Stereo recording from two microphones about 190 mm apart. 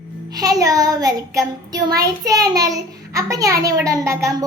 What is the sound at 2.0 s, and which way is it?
A child's voice, 20° right (ahead or behind).